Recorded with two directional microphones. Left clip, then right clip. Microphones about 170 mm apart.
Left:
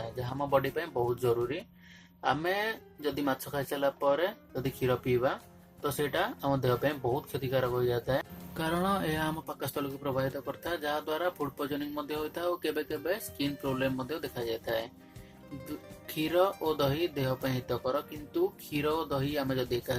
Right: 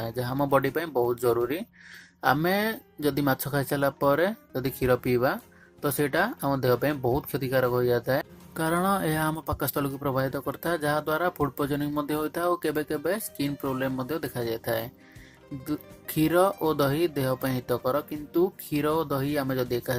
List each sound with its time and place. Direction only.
0.0 s speech: 40° right (ahead or behind)
16.0 s speech: 35° right (ahead or behind)